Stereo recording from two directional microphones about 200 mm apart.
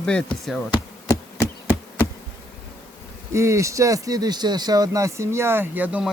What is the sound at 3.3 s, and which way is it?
Speech, 15° right (ahead or behind).